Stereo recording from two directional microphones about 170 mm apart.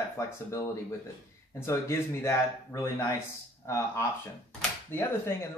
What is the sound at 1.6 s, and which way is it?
Speech, 15° left (ahead or behind).